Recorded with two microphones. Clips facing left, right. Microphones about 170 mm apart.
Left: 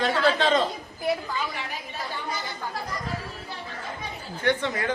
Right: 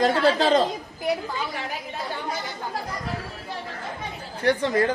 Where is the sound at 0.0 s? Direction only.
40° right (ahead or behind).